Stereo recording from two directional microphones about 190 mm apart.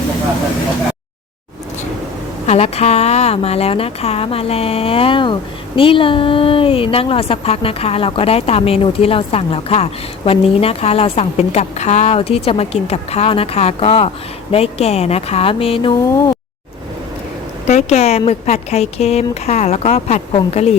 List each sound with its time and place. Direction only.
2.5 s a woman's voice: 35° left (ahead or behind)
17.7 s a woman's voice: 35° left (ahead or behind)